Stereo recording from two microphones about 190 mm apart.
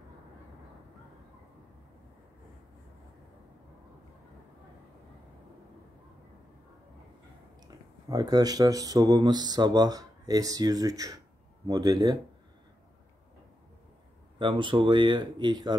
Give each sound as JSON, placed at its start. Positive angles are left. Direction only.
{"t": 7.6, "sound": "speech", "side_deg": -20}
{"t": 14.4, "sound": "speech", "side_deg": -25}